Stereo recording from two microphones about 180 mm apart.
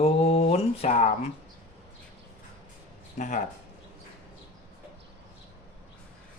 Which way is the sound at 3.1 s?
40° left (ahead or behind).